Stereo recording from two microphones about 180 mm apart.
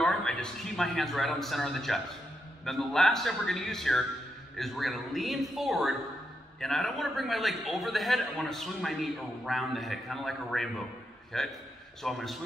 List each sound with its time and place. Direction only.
0.0 s a man's voice: 5° left (ahead or behind)